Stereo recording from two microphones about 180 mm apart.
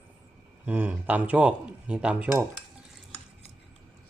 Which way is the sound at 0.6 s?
10° right (ahead or behind).